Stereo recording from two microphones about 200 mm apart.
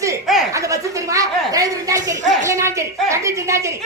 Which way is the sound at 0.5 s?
15° right (ahead or behind).